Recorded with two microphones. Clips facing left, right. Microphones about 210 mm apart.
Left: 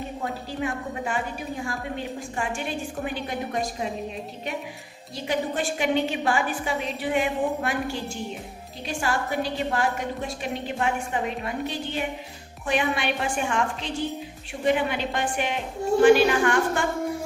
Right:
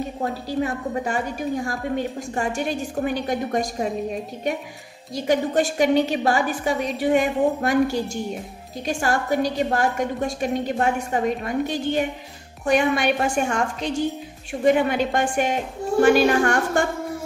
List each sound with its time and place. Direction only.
0.2 s a woman's voice: 40° right (ahead or behind)
5.1 s a woman's voice: 45° right (ahead or behind)